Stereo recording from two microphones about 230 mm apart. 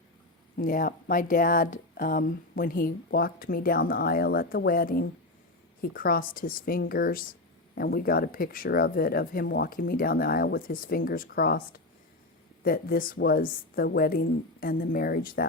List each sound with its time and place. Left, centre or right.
0.5 s speech: left